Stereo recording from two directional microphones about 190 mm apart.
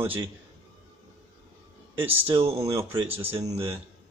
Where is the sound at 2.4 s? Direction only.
30° right (ahead or behind).